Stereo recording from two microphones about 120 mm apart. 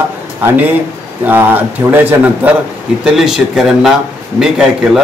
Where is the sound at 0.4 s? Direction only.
15° right (ahead or behind).